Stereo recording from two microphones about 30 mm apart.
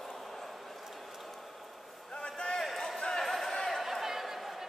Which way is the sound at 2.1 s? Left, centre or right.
Left.